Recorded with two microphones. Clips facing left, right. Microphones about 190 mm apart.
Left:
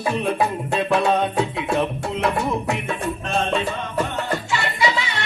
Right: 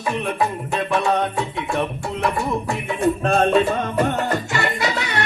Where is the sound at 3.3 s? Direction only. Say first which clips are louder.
Right 5 dB; 50° right (ahead or behind).